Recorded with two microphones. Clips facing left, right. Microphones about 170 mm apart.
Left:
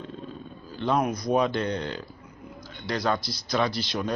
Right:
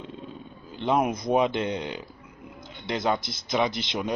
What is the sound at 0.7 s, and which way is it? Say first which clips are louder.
A man's voice: right 1 dB; 20° right (ahead or behind).